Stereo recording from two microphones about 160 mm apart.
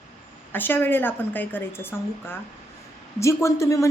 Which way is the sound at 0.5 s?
10° left (ahead or behind).